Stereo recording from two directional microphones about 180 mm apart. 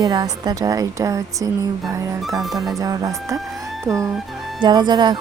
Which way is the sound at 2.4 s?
Centre (ahead or behind).